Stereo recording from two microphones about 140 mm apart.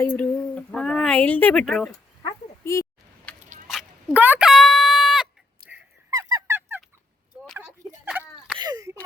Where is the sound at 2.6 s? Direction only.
20° left (ahead or behind).